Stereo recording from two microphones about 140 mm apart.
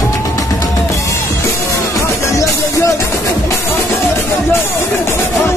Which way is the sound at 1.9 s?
20° left (ahead or behind).